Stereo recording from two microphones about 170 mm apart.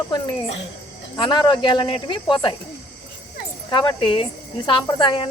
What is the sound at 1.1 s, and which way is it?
Speech, 25° left (ahead or behind).